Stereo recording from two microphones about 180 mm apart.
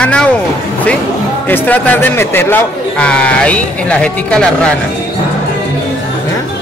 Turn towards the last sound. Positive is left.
turn(degrees=5)  # may be behind; listen again after turning